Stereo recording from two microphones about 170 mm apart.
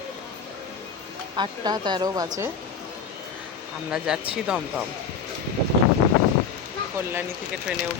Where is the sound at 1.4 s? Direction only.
25° right (ahead or behind).